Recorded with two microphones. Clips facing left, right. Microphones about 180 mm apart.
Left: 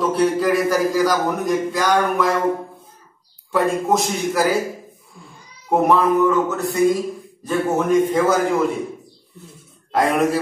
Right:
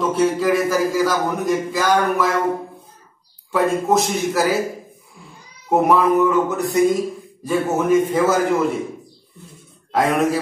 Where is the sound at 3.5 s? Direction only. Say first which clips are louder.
Right 1 dB; centre (ahead or behind).